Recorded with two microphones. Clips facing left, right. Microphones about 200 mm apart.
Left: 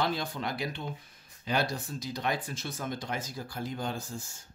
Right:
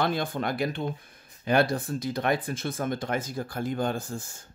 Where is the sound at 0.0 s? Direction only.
55° right (ahead or behind).